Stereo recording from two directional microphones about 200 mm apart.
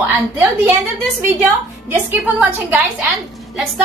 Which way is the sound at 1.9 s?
10° right (ahead or behind).